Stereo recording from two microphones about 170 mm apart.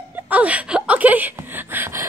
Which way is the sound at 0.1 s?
10° right (ahead or behind).